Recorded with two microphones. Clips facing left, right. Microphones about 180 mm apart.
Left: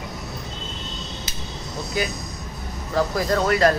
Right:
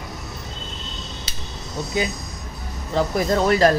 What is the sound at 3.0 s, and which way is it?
Speech, 20° right (ahead or behind).